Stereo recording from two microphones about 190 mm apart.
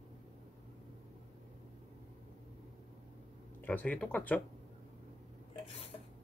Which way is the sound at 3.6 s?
10° left (ahead or behind).